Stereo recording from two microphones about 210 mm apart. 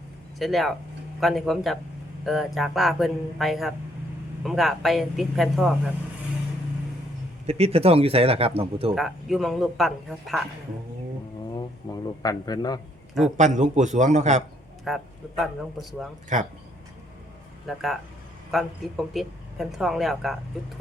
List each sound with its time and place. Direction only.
0.3 s speech: centre (ahead or behind)
7.4 s speech: 30° right (ahead or behind)
9.0 s speech: centre (ahead or behind)
11.5 s a man's voice: 15° left (ahead or behind)
13.3 s a man's voice: 35° right (ahead or behind)
14.8 s speech: centre (ahead or behind)
16.3 s a man's voice: 35° right (ahead or behind)
17.7 s speech: centre (ahead or behind)